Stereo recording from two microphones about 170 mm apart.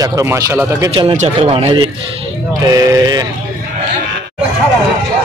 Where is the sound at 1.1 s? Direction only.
40° right (ahead or behind).